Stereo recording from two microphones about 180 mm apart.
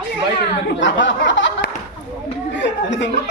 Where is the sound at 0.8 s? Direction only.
90° left.